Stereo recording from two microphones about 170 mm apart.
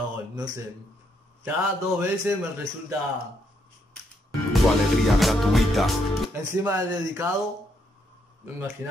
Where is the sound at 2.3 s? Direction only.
10° right (ahead or behind).